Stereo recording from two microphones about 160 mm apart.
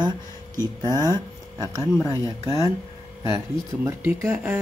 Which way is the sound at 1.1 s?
20° right (ahead or behind).